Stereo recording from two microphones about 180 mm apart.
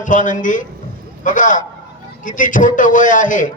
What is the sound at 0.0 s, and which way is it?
A man's voice, 45° left (ahead or behind).